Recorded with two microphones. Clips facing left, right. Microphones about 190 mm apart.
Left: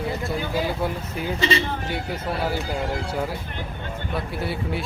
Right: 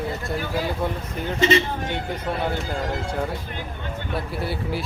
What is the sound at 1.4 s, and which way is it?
Speech, 30° left (ahead or behind).